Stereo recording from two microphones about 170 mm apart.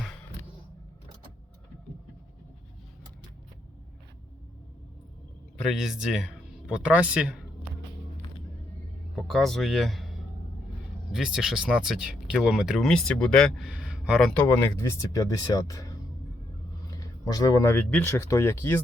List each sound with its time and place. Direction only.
5.6 s speech: centre (ahead or behind)
9.1 s speech: centre (ahead or behind)
14.4 s speech: 15° left (ahead or behind)